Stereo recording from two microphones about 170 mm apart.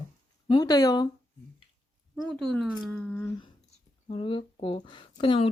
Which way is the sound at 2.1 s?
Centre (ahead or behind).